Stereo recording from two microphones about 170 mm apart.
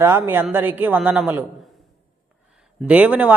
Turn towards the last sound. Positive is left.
turn(degrees=-10)  # may be behind; listen again after turning